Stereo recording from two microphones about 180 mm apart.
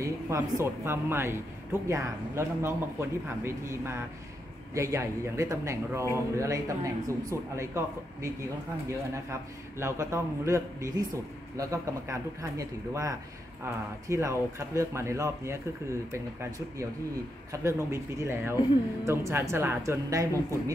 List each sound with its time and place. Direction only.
0.0 s speech: 15° right (ahead or behind)